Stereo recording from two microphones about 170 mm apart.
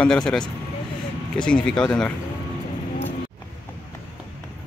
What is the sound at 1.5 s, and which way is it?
Speech, 5° left (ahead or behind).